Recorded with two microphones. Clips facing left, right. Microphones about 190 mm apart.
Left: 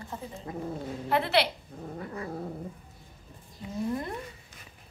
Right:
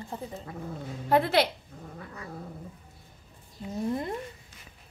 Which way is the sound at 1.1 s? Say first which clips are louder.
Right 3 dB; 45° right (ahead or behind).